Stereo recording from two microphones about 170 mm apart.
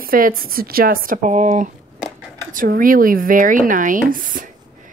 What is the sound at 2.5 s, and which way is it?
Speech, 55° right (ahead or behind).